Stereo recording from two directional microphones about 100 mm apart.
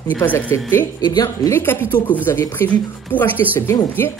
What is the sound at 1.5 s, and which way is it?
Speech, 25° left (ahead or behind).